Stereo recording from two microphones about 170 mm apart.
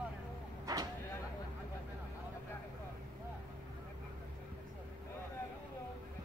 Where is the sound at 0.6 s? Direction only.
20° right (ahead or behind).